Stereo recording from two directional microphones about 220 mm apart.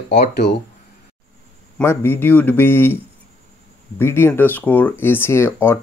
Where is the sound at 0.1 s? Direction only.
50° left (ahead or behind).